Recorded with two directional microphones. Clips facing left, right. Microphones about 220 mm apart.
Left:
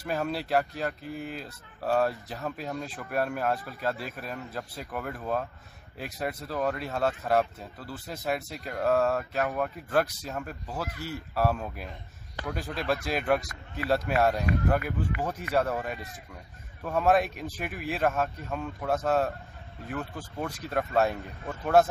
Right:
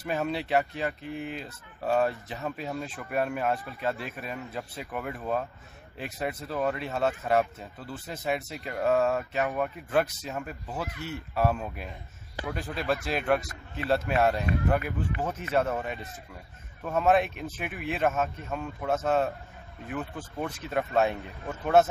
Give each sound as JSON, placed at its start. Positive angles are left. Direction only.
{"t": 0.0, "sound": "speech", "side_deg": 0}